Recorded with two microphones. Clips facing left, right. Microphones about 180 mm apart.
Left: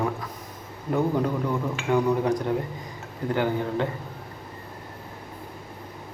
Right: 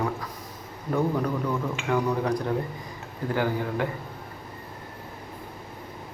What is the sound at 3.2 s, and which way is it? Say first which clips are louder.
Speech: left 2 dB; 20° left (ahead or behind).